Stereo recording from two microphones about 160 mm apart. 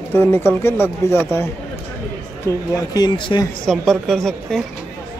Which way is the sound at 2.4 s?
25° left (ahead or behind).